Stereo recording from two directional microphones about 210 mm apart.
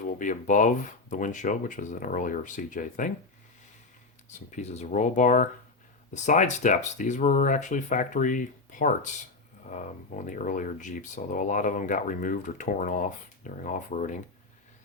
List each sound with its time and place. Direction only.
0.0 s speech: 40° left (ahead or behind)
4.4 s speech: 35° left (ahead or behind)
9.6 s speech: 35° left (ahead or behind)